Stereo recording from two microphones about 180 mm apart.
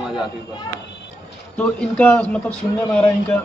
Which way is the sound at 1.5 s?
10° left (ahead or behind).